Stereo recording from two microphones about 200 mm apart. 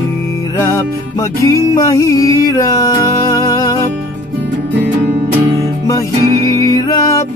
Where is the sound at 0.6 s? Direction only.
15° left (ahead or behind).